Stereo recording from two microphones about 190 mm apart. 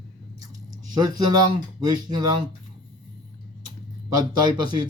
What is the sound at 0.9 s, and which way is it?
Speech, 20° right (ahead or behind).